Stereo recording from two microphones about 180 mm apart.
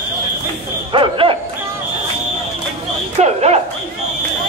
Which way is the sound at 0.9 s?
30° right (ahead or behind).